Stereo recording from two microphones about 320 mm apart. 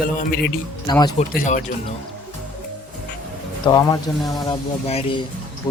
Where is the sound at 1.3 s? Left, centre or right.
Left.